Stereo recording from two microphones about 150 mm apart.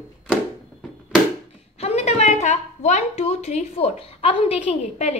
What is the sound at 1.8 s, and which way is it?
A woman's voice, 45° left (ahead or behind).